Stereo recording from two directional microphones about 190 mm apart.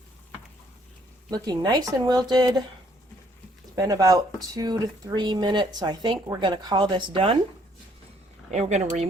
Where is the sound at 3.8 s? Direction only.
20° right (ahead or behind).